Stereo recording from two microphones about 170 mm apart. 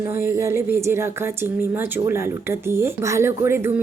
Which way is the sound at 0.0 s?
15° right (ahead or behind).